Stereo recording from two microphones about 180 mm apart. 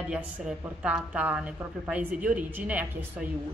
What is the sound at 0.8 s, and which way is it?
A woman's voice, 5° right (ahead or behind).